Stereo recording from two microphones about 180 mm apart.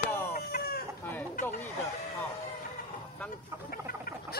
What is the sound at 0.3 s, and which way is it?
Chicken, 55° left (ahead or behind).